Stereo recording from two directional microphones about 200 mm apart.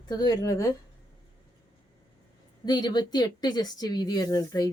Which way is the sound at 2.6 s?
20° left (ahead or behind).